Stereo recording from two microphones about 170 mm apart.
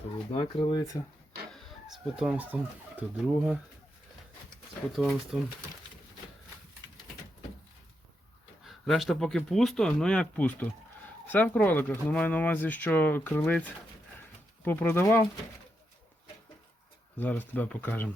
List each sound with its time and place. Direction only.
0.3 s speech: 35° left (ahead or behind)
1.5 s speech: 5° right (ahead or behind)
4.9 s speech: centre (ahead or behind)
8.6 s speech: centre (ahead or behind); by 15.3 s 15° left (ahead or behind)
17.2 s speech: 10° left (ahead or behind)